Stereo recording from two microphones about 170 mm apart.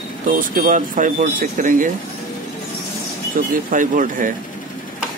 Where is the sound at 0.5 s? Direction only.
55° right (ahead or behind).